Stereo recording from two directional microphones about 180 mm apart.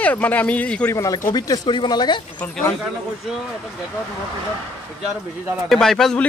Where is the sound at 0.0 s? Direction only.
10° left (ahead or behind).